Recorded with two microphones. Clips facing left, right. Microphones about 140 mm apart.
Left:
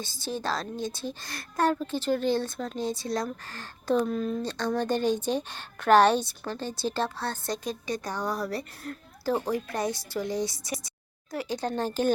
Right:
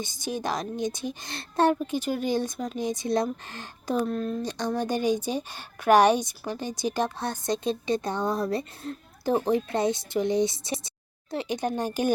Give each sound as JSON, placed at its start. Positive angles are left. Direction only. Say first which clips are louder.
{"t": 0.0, "sound": "a woman's voice", "louder": "right 2 dB", "side_deg": -15}
{"t": 4.0, "sound": "speech", "louder": "even", "side_deg": 0}
{"t": 4.4, "sound": "a woman's voice", "louder": "even", "side_deg": -15}